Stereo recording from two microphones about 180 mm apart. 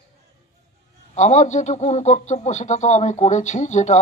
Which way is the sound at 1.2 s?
40° left (ahead or behind).